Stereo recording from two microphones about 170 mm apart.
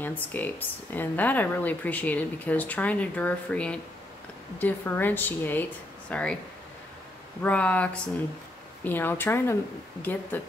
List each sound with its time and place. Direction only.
0.0 s speech: 10° left (ahead or behind)
7.4 s speech: 10° left (ahead or behind)